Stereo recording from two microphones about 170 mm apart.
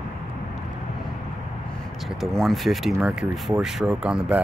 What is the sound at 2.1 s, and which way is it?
Speech, centre (ahead or behind).